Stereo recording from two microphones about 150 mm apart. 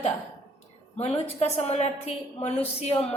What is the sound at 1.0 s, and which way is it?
A woman's voice, 45° left (ahead or behind).